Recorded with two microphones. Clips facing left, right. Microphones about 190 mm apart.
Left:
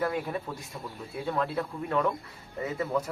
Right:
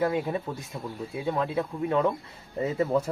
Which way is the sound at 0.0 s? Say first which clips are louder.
Right 4 dB; 20° right (ahead or behind).